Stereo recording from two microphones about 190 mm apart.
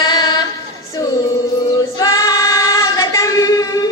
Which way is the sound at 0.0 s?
20° left (ahead or behind).